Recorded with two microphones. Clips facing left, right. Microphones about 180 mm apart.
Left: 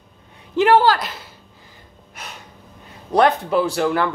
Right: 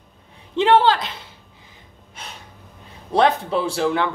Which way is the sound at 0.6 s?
25° right (ahead or behind).